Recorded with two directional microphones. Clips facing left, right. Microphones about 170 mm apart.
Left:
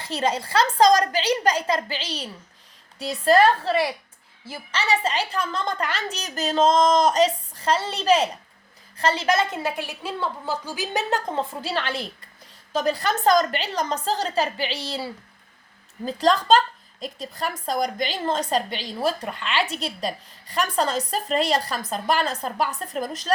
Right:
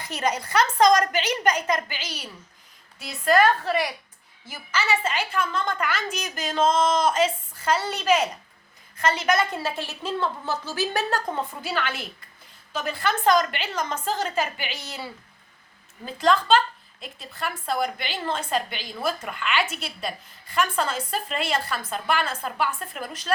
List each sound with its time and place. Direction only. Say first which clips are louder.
0.0 s a woman's voice: left 2 dB; 30° left (ahead or behind)